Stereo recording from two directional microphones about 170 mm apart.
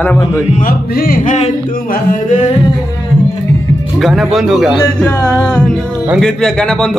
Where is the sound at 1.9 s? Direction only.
50° left (ahead or behind).